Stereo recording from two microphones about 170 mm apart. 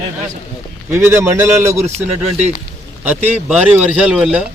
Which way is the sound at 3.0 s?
10° right (ahead or behind).